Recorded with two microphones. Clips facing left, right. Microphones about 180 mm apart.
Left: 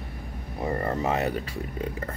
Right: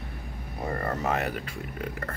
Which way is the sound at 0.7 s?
25° left (ahead or behind).